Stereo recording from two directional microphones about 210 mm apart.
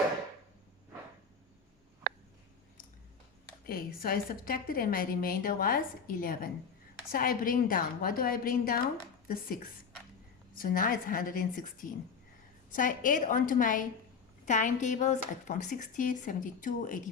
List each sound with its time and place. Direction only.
3.7 s a woman's voice: 45° left (ahead or behind)